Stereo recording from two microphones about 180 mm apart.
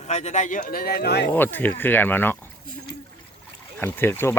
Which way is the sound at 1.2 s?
10° left (ahead or behind).